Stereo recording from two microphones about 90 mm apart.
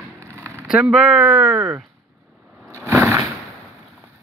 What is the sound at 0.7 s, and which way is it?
Speech, 10° right (ahead or behind).